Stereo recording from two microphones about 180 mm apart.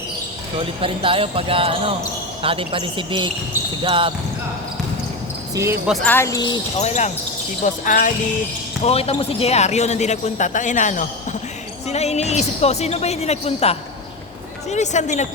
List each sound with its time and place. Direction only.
0.8 s speech: 30° right (ahead or behind)
5.5 s speech: 15° right (ahead or behind)
5.9 s speech: 10° left (ahead or behind)
6.7 s speech: 40° left (ahead or behind)
8.8 s speech: 35° left (ahead or behind)